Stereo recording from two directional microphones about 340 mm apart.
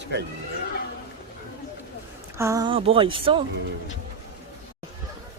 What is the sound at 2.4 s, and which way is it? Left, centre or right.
Speech, centre.